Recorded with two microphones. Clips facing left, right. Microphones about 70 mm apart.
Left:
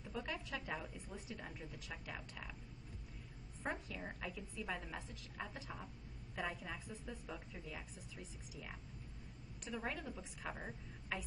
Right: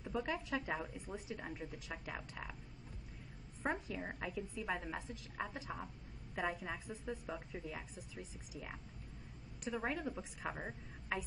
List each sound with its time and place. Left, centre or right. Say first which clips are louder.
0.0 s a woman's voice: right 5 dB; centre
3.6 s a woman's voice: right 4 dB; right